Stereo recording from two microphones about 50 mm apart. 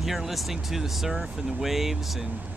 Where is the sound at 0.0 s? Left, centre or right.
Centre.